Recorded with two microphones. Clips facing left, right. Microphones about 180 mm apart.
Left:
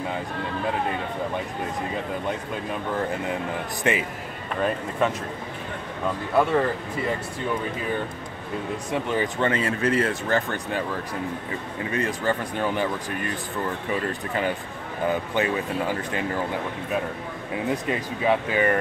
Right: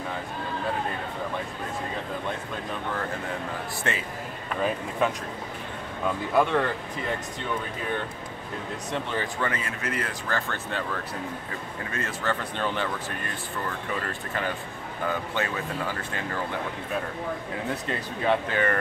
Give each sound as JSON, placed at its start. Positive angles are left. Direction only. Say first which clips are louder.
{"t": 3.9, "sound": "speech", "louder": "left 7 dB", "side_deg": 15}
{"t": 4.6, "sound": "speech", "louder": "left 2 dB", "side_deg": 0}
{"t": 6.3, "sound": "speech", "louder": "left 3 dB", "side_deg": 5}
{"t": 8.9, "sound": "speech", "louder": "left 5 dB", "side_deg": 10}
{"t": 9.4, "sound": "speech", "louder": "left 7 dB", "side_deg": 30}
{"t": 11.9, "sound": "speech", "louder": "left 5 dB", "side_deg": 15}
{"t": 15.0, "sound": "speech", "louder": "left 5 dB", "side_deg": 15}
{"t": 17.8, "sound": "speech", "louder": "even", "side_deg": 10}